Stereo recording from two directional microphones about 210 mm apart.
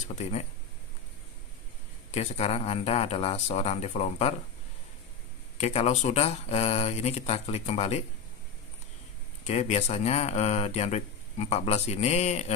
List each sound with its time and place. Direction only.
0.1 s speech: 30° left (ahead or behind)
2.0 s speech: 30° left (ahead or behind)
5.6 s speech: 30° left (ahead or behind)
9.5 s speech: 30° left (ahead or behind)